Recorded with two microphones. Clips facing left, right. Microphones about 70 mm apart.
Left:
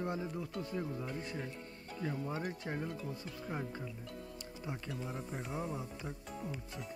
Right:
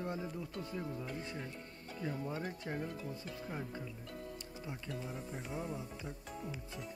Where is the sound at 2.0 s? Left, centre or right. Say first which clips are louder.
Left 1 dB; centre.